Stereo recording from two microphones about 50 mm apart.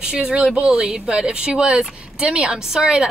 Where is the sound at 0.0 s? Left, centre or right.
Centre.